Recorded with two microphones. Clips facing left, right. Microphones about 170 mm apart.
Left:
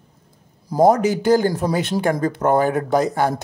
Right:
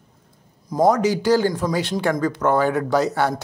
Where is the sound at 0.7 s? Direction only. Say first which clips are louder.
Left 2 dB; 30° left (ahead or behind).